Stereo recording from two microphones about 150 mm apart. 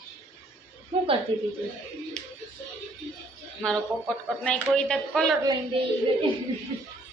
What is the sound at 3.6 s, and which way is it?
Speech, 5° left (ahead or behind).